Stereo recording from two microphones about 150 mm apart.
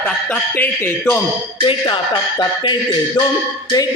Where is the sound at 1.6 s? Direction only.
30° left (ahead or behind).